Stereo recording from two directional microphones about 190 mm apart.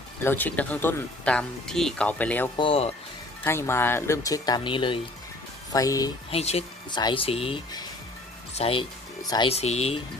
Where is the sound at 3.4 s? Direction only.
15° left (ahead or behind).